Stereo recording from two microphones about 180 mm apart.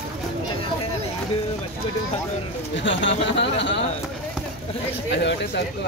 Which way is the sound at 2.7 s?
90° left.